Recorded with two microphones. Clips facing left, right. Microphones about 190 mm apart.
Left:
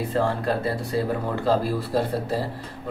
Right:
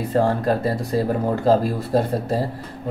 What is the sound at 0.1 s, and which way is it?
Speech, 40° right (ahead or behind).